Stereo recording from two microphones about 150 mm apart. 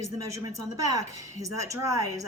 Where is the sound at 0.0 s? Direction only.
20° right (ahead or behind).